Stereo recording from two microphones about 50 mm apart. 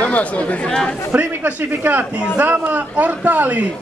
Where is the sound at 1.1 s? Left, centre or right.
Right.